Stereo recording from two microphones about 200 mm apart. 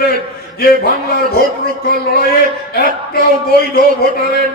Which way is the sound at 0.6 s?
50° left (ahead or behind).